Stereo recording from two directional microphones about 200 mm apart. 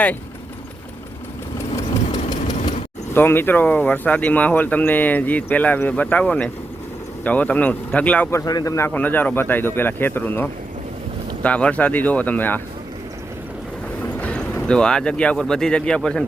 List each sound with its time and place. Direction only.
3.1 s speech: 10° left (ahead or behind)
14.0 s speech: 10° left (ahead or behind)